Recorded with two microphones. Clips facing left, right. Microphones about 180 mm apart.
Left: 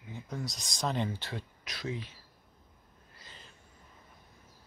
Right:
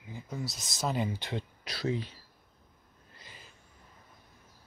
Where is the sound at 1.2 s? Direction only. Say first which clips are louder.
Right 4 dB; 20° right (ahead or behind).